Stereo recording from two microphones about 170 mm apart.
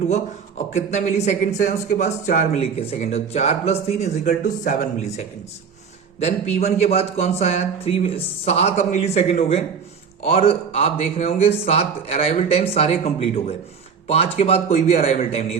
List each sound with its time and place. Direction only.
0.7 s speech: 45° left (ahead or behind)